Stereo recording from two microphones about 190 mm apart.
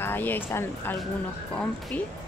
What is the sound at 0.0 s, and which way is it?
Speech, 10° left (ahead or behind).